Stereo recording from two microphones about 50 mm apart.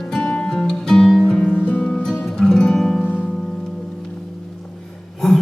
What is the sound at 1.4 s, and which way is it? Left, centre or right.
Music, left.